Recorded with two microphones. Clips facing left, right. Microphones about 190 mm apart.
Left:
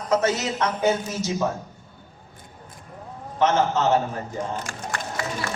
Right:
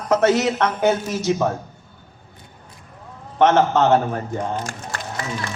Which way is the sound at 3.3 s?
60° right (ahead or behind).